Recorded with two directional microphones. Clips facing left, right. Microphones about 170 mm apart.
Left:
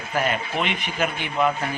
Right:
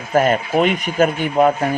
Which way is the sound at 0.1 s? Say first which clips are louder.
Right 9 dB; 45° right (ahead or behind).